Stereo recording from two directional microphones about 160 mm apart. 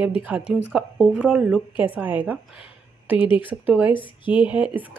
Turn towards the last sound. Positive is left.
turn(degrees=-10)  # may be behind; listen again after turning